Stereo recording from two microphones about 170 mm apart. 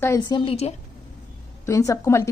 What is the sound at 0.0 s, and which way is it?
Speech, 15° left (ahead or behind).